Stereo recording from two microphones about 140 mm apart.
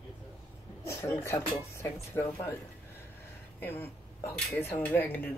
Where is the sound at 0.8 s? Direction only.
20° left (ahead or behind).